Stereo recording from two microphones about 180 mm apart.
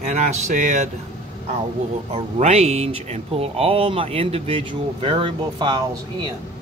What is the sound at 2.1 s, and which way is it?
Speech, 35° right (ahead or behind).